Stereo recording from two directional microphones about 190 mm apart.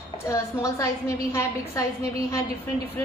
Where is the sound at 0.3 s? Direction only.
15° left (ahead or behind).